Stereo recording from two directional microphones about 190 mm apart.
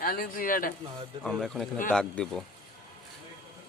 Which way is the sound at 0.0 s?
50° left (ahead or behind).